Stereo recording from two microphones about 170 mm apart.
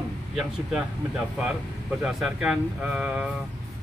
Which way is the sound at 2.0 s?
Centre (ahead or behind).